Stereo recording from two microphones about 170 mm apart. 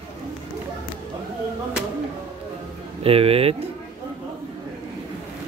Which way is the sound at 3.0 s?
35° right (ahead or behind).